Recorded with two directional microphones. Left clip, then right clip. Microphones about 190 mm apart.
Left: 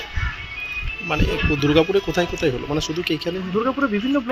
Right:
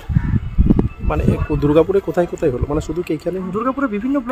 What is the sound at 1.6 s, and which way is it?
Speech, 55° right (ahead or behind).